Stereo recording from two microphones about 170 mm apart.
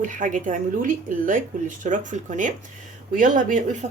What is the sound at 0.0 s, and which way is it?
A woman's voice, 50° right (ahead or behind).